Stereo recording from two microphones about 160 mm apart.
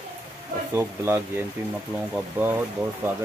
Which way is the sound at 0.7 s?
15° right (ahead or behind).